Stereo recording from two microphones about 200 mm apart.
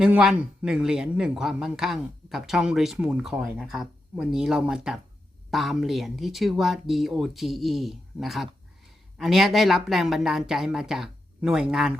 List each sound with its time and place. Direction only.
0.0 s speech: 5° right (ahead or behind)